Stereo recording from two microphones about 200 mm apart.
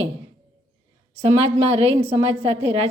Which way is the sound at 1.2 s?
30° right (ahead or behind).